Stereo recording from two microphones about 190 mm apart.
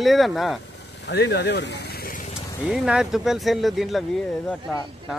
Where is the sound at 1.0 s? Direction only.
60° left (ahead or behind).